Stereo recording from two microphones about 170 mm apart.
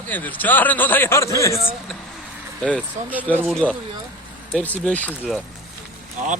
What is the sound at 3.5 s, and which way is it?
Speech, 5° left (ahead or behind).